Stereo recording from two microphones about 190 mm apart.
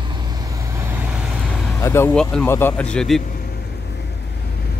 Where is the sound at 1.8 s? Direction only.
15° left (ahead or behind).